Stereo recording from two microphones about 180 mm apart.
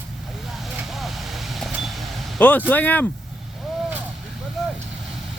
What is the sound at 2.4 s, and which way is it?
Speech, 10° left (ahead or behind).